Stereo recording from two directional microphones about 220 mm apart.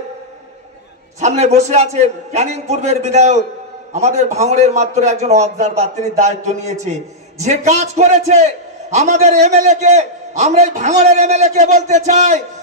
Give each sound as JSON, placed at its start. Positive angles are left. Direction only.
{"t": 1.2, "sound": "a man's voice", "side_deg": -30}